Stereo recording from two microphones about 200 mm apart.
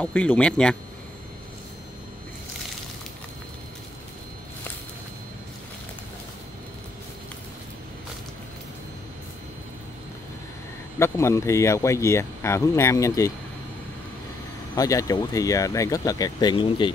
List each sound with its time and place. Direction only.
0.0 s speech: 10° left (ahead or behind)
11.0 s speech: 15° left (ahead or behind)
14.8 s speech: 15° left (ahead or behind)